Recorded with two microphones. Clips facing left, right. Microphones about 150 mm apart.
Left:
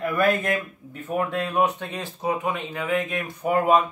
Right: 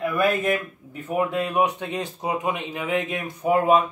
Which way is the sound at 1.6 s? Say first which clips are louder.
Even; 20° right (ahead or behind).